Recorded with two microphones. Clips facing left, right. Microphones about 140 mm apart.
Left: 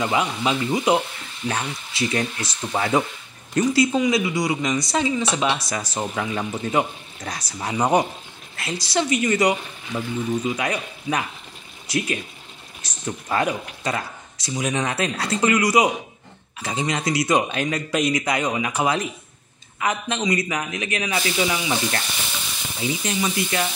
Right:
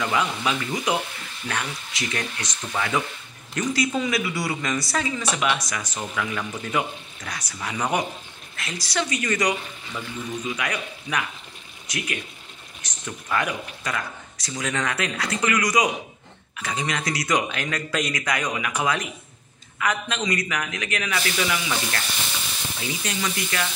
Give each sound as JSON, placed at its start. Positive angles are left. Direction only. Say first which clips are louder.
{"t": 0.0, "sound": "speech", "louder": "left 2 dB", "side_deg": 25}
{"t": 13.0, "sound": "speech", "louder": "left 4 dB", "side_deg": 30}